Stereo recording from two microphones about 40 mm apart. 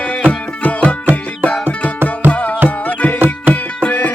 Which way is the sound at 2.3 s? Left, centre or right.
Left.